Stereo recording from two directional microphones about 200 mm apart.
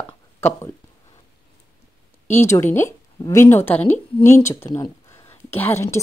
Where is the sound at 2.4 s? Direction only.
10° left (ahead or behind).